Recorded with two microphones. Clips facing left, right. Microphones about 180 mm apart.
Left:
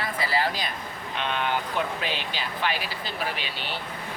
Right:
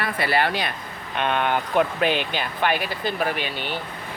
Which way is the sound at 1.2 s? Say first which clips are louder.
Right 5 dB; 55° right (ahead or behind).